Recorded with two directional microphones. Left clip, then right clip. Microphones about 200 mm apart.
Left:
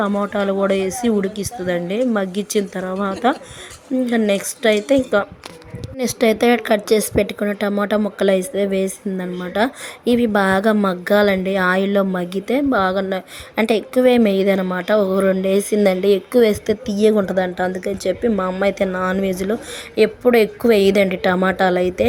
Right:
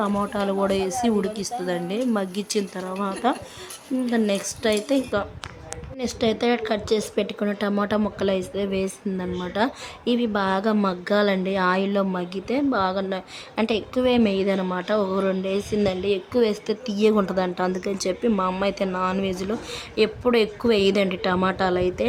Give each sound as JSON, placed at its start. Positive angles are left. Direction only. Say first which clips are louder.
{"t": 0.0, "sound": "a woman's voice", "louder": "left 5 dB", "side_deg": 15}